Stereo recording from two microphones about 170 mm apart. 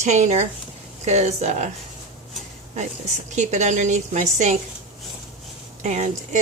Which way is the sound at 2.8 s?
45° right (ahead or behind).